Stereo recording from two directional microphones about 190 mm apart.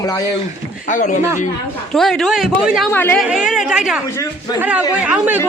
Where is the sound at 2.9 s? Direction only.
10° left (ahead or behind).